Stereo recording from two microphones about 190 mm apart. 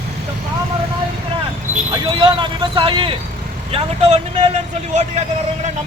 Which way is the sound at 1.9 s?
25° right (ahead or behind).